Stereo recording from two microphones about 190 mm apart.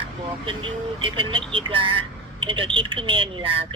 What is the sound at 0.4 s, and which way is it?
Speech, 25° right (ahead or behind).